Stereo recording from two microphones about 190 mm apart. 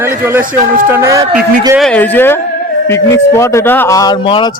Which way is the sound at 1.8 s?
5° left (ahead or behind).